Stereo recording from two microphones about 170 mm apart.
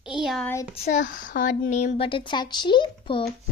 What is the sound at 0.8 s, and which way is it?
Speech, 50° left (ahead or behind).